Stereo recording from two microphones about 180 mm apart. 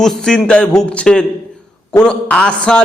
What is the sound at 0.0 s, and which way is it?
A man's voice, 5° left (ahead or behind).